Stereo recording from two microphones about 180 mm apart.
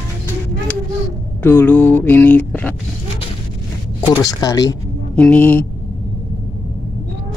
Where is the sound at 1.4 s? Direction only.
10° left (ahead or behind).